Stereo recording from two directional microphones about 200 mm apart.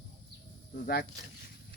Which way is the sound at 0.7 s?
45° left (ahead or behind).